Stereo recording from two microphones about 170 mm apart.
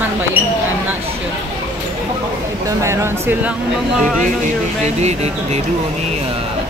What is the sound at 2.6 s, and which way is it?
Speech, 15° right (ahead or behind).